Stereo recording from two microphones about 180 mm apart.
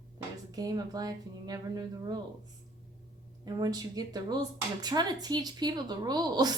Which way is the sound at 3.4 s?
20° right (ahead or behind).